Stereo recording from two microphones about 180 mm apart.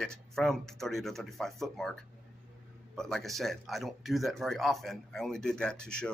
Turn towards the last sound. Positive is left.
turn(degrees=5)  # may be behind; listen again after turning